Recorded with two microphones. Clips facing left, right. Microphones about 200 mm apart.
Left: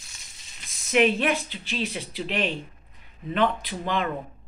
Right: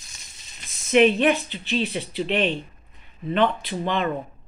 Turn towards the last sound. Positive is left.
turn(degrees=0)  # may be behind; listen again after turning